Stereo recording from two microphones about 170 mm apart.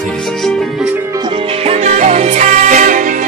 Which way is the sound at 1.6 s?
40° right (ahead or behind).